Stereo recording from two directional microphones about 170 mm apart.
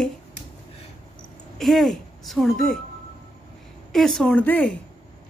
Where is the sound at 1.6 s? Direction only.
Centre (ahead or behind).